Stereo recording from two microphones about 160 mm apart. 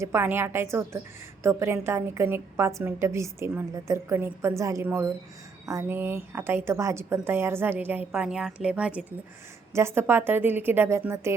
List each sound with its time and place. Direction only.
0.0 s a woman's voice: 15° right (ahead or behind)